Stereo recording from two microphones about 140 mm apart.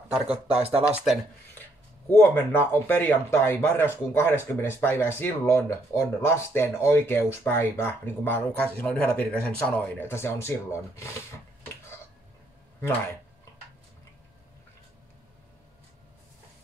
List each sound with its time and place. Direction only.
0.5 s speech: 45° right (ahead or behind)
0.8 s speech: 10° right (ahead or behind)
1.6 s speech: 15° left (ahead or behind)